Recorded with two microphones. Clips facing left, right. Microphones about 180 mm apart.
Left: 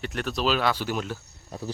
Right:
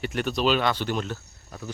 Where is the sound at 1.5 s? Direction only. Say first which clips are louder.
Left 3 dB; 30° left (ahead or behind).